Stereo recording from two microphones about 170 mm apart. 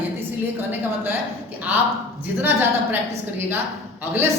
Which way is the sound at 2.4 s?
10° right (ahead or behind).